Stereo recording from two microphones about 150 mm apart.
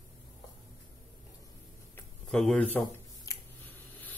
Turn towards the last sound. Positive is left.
turn(degrees=20)  # may be behind; listen again after turning